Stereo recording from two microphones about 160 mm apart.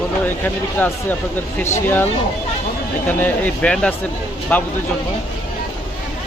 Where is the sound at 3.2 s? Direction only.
10° left (ahead or behind).